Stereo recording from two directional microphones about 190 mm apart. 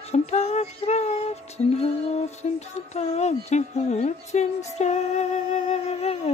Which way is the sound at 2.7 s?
35° left (ahead or behind).